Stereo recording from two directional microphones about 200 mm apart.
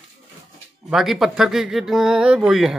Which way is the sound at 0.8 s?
Centre (ahead or behind).